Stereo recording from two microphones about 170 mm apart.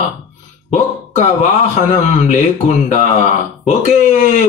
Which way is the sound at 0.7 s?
45° left (ahead or behind).